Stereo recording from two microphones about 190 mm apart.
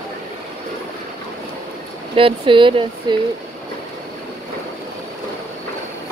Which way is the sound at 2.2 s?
25° right (ahead or behind).